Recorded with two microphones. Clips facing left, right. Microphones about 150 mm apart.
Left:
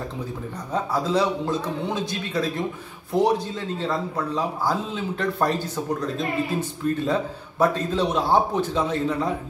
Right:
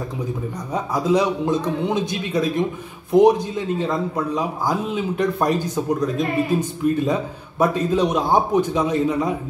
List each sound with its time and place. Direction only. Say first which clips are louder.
0.9 s speech: right 4 dB; 15° right (ahead or behind)